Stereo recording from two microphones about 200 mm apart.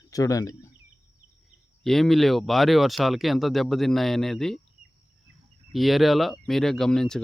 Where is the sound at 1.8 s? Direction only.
Centre (ahead or behind).